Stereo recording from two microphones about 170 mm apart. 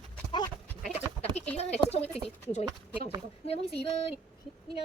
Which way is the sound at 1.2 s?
35° left (ahead or behind).